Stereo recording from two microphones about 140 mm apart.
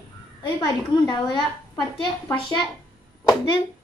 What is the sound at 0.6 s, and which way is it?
A woman's voice, 30° left (ahead or behind).